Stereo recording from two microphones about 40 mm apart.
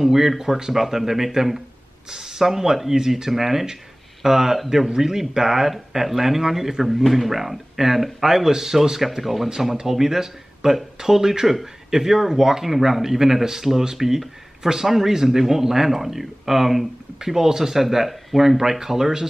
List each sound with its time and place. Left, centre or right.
0.0 s speech: centre